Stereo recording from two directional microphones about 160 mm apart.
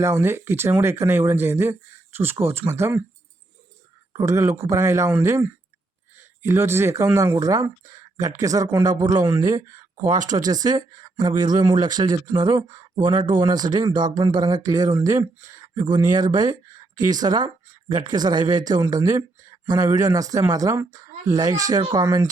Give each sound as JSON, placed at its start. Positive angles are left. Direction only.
{"t": 0.0, "sound": "speech", "side_deg": -15}
{"t": 4.2, "sound": "speech", "side_deg": -20}